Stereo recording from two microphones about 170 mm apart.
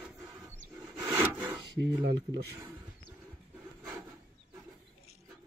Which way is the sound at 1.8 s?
90° right.